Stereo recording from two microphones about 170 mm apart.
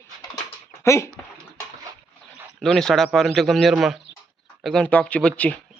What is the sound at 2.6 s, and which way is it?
A man's voice, centre (ahead or behind).